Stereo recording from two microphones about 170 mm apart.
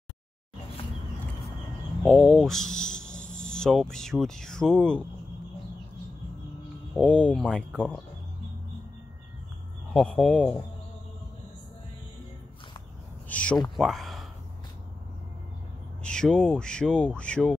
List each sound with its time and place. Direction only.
2.0 s speech: 5° left (ahead or behind)
6.9 s speech: 5° left (ahead or behind)
9.9 s speech: centre (ahead or behind)
13.3 s a sound: 5° left (ahead or behind)
13.7 s speech: centre (ahead or behind)
16.0 s speech: 5° left (ahead or behind)